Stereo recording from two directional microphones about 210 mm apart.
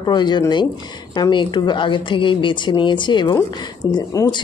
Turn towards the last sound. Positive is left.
turn(degrees=20)  # may be behind; listen again after turning